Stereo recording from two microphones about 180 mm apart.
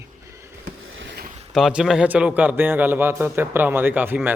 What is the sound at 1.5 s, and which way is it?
A man's voice, centre (ahead or behind).